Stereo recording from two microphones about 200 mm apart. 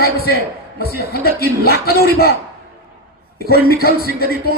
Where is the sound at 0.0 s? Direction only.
50° left (ahead or behind).